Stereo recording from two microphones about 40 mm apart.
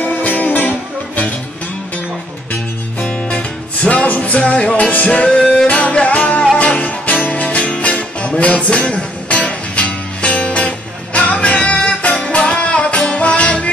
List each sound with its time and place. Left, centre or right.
0.0 s music: left
3.0 s music: left